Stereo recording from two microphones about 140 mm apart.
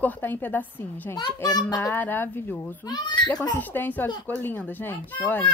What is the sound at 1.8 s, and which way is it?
Speech, 15° left (ahead or behind).